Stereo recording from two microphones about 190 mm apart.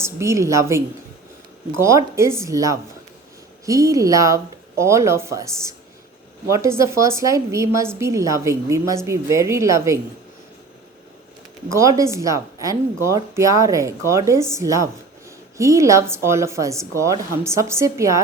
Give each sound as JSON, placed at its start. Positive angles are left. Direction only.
{"t": 0.0, "sound": "speech", "side_deg": -15}
{"t": 1.8, "sound": "speech", "side_deg": -15}
{"t": 11.7, "sound": "speech", "side_deg": -15}